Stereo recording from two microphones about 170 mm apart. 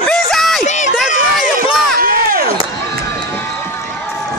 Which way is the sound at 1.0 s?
45° left (ahead or behind).